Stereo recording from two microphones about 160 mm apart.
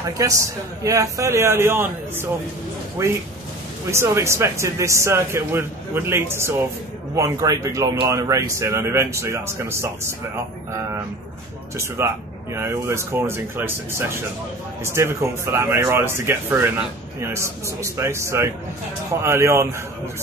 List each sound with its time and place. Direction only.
0.2 s a man's voice: 20° right (ahead or behind)
3.0 s a man's voice: 15° right (ahead or behind)
12.0 s speech: 15° right (ahead or behind)